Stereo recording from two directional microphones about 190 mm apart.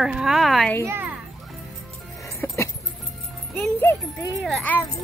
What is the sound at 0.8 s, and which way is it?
Speech, 10° right (ahead or behind).